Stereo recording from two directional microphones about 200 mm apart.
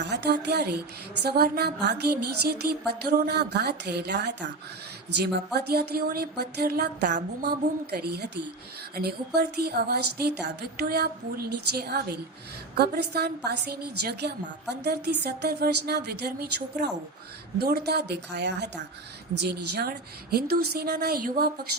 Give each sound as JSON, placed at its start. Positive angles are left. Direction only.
{"t": 0.0, "sound": "speech", "side_deg": -55}
{"t": 5.5, "sound": "a woman's voice", "side_deg": -55}
{"t": 17.6, "sound": "a woman's voice", "side_deg": -50}